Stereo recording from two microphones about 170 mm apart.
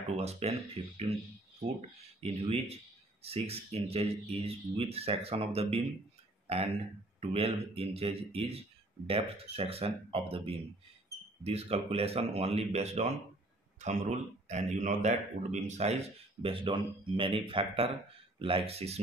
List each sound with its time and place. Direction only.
0.2 s speech: 40° right (ahead or behind)
2.1 s speech: 35° right (ahead or behind)